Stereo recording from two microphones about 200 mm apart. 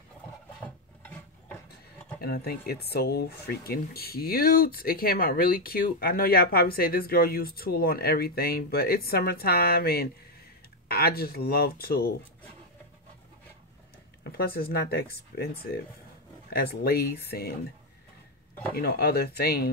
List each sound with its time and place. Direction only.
0.6 s filing: 5° left (ahead or behind)
2.2 s speech: 50° left (ahead or behind)
14.2 s speech: 50° left (ahead or behind)
18.8 s speech: 50° left (ahead or behind)